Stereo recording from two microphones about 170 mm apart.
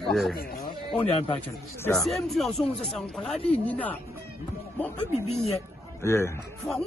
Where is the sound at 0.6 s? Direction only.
35° left (ahead or behind).